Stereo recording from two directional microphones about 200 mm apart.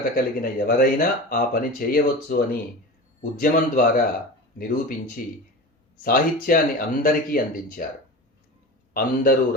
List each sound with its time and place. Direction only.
0.4 s speech: 45° left (ahead or behind)
8.9 s speech: 45° left (ahead or behind)